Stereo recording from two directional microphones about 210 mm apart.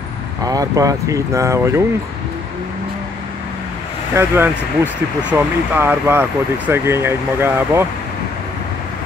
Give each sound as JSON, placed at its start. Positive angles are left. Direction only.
{"t": 0.5, "sound": "speech", "side_deg": -15}
{"t": 4.1, "sound": "speech", "side_deg": -10}